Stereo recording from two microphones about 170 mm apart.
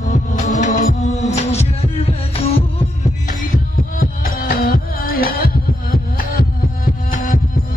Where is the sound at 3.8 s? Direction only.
55° left (ahead or behind).